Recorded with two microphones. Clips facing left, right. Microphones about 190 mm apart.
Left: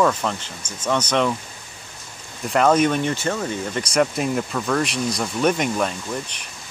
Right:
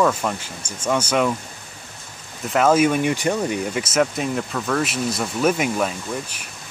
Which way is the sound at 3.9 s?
Centre (ahead or behind).